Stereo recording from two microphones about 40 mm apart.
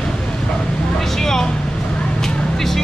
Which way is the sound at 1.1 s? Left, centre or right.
Centre.